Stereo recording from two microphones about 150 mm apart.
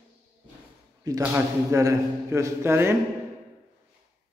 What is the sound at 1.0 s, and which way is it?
A man's voice, 25° right (ahead or behind).